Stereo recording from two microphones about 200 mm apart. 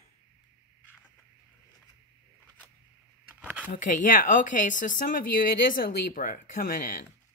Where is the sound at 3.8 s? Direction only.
40° left (ahead or behind).